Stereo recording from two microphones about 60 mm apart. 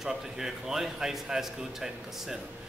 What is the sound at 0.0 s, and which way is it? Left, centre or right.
A man's voice, centre.